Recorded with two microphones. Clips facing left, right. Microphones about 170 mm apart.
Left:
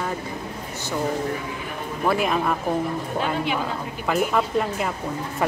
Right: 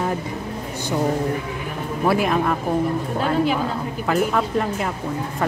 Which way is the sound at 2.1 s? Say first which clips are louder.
Right 2 dB; centre (ahead or behind).